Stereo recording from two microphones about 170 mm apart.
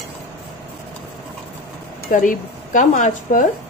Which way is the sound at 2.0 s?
50° left (ahead or behind).